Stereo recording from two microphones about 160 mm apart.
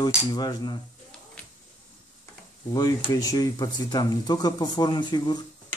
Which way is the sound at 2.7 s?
20° left (ahead or behind).